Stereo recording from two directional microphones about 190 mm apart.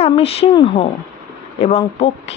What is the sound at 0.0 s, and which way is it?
Speech, 30° left (ahead or behind).